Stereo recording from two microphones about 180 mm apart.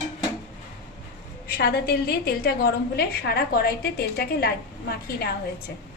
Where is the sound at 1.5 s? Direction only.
60° left (ahead or behind).